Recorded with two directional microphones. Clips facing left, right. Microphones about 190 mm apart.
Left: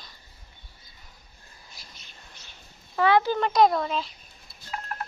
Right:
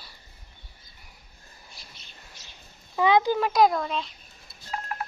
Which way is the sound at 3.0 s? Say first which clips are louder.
Even; 15° right (ahead or behind).